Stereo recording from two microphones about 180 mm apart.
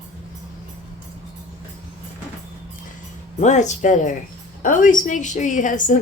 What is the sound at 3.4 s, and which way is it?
A woman's voice, 40° left (ahead or behind).